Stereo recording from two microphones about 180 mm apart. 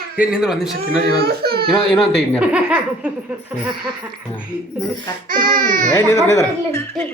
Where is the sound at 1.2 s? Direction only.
60° right (ahead or behind).